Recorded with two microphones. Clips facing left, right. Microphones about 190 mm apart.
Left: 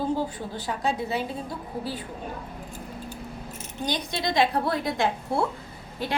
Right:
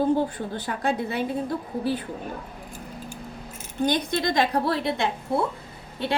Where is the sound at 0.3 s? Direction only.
55° right (ahead or behind).